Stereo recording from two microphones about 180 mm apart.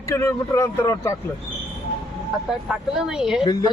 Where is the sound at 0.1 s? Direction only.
15° left (ahead or behind).